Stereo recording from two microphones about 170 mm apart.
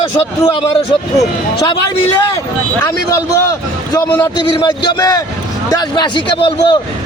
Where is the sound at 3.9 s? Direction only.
25° left (ahead or behind).